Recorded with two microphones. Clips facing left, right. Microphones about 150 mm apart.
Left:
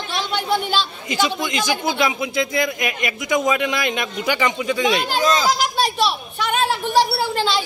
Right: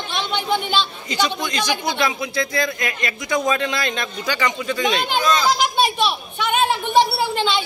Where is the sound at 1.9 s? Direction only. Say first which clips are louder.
Left 2 dB; 20° left (ahead or behind).